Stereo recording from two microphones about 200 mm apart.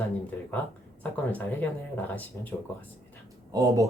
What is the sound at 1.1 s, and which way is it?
Speech, 10° left (ahead or behind).